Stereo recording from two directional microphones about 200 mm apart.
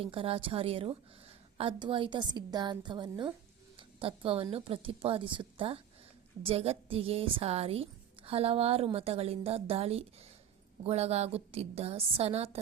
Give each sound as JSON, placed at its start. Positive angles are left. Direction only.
{"t": 0.0, "sound": "a woman's voice", "side_deg": -30}
{"t": 3.8, "sound": "a sound", "side_deg": -25}
{"t": 4.5, "sound": "a woman's voice", "side_deg": -30}